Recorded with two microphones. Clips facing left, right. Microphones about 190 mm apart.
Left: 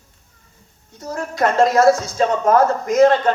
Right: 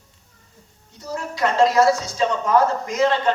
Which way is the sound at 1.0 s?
50° left (ahead or behind).